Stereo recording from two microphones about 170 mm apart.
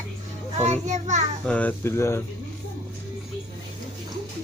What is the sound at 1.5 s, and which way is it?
Speech, 10° left (ahead or behind).